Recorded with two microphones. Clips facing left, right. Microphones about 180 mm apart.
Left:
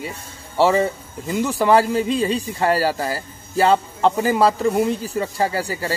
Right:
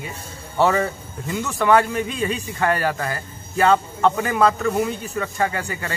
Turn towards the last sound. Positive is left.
turn(degrees=35)  # may be behind; listen again after turning